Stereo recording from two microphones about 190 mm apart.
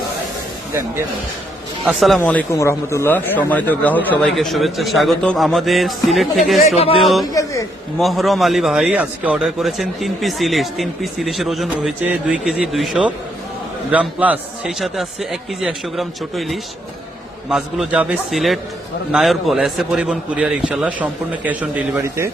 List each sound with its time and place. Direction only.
1.9 s a man's voice: centre (ahead or behind)
6.7 s speech: 30° left (ahead or behind)
7.0 s a man's voice: centre (ahead or behind)